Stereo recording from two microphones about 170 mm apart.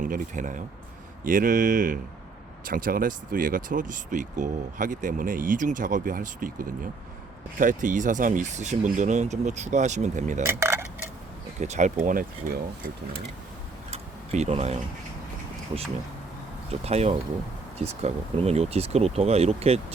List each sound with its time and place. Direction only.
0.0 s speech: 50° right (ahead or behind)
7.6 s speech: 50° right (ahead or behind)
10.4 s speech: 15° right (ahead or behind)
11.6 s speech: 45° right (ahead or behind)
12.0 s speech: 60° right (ahead or behind)
13.9 s a sound: 40° right (ahead or behind)
16.8 s speech: 40° right (ahead or behind)